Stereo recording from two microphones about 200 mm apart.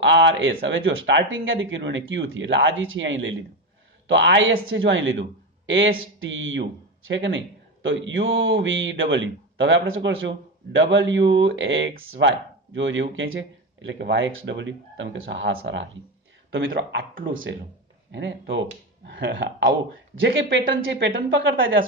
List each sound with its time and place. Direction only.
0.0 s speech: 65° right (ahead or behind)
18.1 s speech: 65° right (ahead or behind)